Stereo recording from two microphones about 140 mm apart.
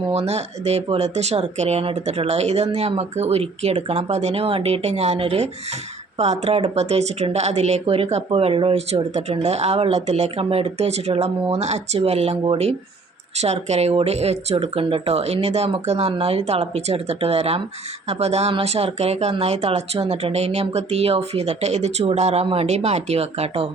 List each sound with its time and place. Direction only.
0.1 s speech: 50° right (ahead or behind)